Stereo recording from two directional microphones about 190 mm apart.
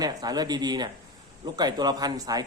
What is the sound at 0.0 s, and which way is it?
A man's voice, 20° right (ahead or behind).